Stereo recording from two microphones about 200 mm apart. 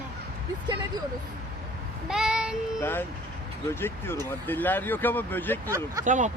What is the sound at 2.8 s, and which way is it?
Speech, 10° left (ahead or behind).